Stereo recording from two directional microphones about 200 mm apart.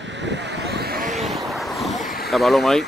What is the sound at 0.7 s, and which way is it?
Vehicle, 50° right (ahead or behind).